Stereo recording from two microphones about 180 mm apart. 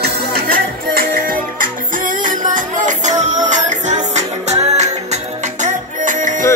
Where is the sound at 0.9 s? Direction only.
50° right (ahead or behind).